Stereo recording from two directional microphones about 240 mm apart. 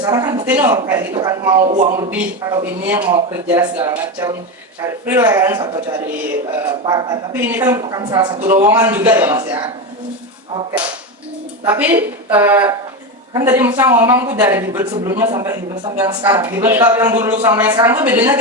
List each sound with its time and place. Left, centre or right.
0.0 s a woman's voice: centre
1.7 s a man's voice: right
2.0 s a woman's voice: centre
11.6 s a woman's voice: centre